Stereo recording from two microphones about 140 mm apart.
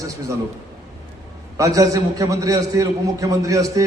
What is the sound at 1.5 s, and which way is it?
A man's voice, 25° right (ahead or behind).